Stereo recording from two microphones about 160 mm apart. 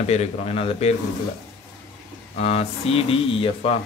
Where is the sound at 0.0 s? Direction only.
45° left (ahead or behind).